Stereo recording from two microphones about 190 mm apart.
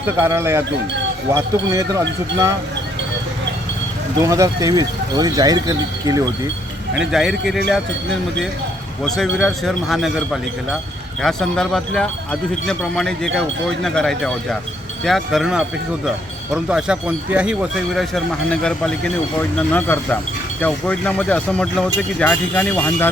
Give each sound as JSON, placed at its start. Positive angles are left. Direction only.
{"t": 0.0, "sound": "speech", "side_deg": -10}
{"t": 4.2, "sound": "speech", "side_deg": -15}
{"t": 6.9, "sound": "speech", "side_deg": -5}
{"t": 11.2, "sound": "speech", "side_deg": 0}
{"t": 16.6, "sound": "speech", "side_deg": -5}